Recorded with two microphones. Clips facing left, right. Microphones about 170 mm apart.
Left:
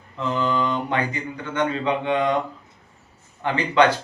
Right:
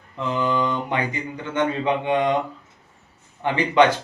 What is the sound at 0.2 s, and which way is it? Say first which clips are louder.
Speech: even; 15° right (ahead or behind).